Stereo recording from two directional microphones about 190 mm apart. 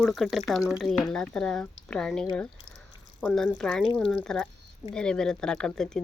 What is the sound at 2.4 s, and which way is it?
Squish, 5° left (ahead or behind).